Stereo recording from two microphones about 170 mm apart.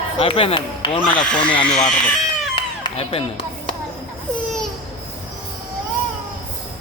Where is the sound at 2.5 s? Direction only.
30° left (ahead or behind).